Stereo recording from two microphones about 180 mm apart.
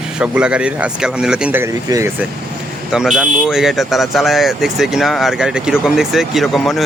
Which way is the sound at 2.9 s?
5° right (ahead or behind).